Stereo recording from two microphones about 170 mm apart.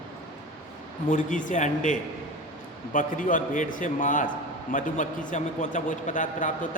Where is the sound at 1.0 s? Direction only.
50° left (ahead or behind).